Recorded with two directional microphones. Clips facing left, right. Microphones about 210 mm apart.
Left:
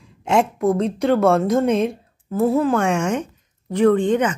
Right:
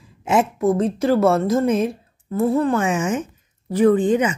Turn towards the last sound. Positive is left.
turn(degrees=-10)  # may be behind; listen again after turning